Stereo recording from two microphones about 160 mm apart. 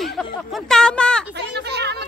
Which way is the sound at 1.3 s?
90° right.